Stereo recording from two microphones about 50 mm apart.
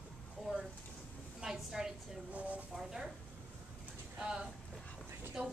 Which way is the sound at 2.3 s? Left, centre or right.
Right.